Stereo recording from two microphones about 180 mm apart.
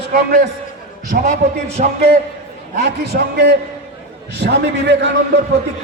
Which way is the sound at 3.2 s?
60° right (ahead or behind).